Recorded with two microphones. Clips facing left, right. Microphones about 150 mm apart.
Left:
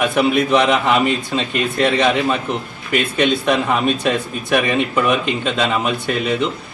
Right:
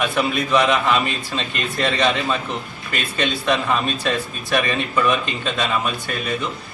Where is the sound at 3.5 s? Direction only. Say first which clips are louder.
Left 4 dB; 15° left (ahead or behind).